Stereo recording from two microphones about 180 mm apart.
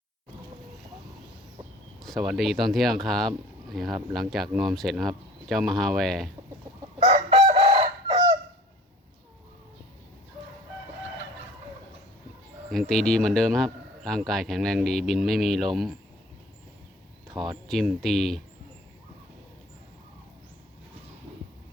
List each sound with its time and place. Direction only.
2.0 s speech: centre (ahead or behind)
7.0 s chicken: 35° right (ahead or behind)
12.7 s speech: 5° left (ahead or behind)
17.2 s speech: centre (ahead or behind)